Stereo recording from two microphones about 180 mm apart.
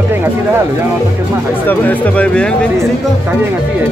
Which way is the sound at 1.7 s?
10° left (ahead or behind).